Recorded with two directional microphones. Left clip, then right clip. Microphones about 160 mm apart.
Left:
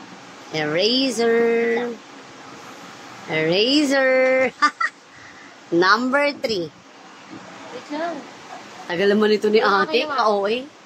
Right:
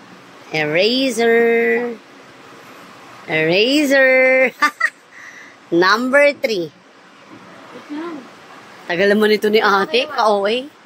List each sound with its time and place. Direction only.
0.5 s speech: 25° right (ahead or behind)
3.3 s speech: 20° right (ahead or behind)
8.8 s a woman's voice: 20° right (ahead or behind); by 10.6 s 35° right (ahead or behind)